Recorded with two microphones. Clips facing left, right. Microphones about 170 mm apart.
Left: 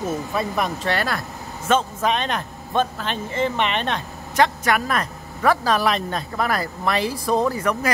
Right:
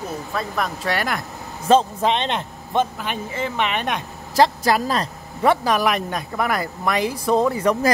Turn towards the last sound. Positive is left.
turn(degrees=-25)  # may be behind; listen again after turning